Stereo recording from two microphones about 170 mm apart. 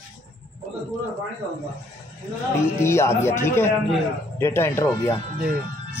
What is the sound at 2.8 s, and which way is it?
Speech, 15° left (ahead or behind).